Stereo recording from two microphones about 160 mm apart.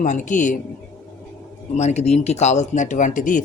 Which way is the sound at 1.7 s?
45° left (ahead or behind).